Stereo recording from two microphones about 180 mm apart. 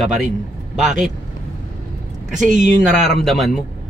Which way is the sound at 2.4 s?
45° right (ahead or behind).